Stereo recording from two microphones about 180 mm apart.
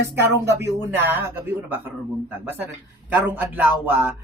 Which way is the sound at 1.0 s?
10° right (ahead or behind).